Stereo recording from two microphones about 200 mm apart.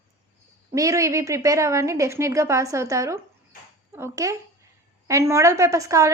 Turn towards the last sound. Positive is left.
turn(degrees=-15)  # may be behind; listen again after turning